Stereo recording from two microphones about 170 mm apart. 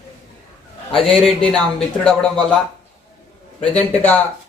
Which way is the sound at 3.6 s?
5° left (ahead or behind).